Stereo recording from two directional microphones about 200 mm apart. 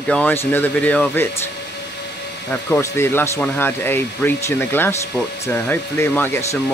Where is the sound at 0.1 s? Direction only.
10° left (ahead or behind).